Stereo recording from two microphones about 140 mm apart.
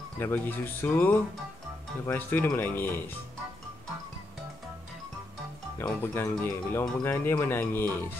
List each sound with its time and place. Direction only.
0.2 s speech: 15° left (ahead or behind)
5.8 s speech: 15° left (ahead or behind)